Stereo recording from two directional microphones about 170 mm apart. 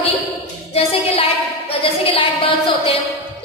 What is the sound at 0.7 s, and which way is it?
Music, 35° left (ahead or behind).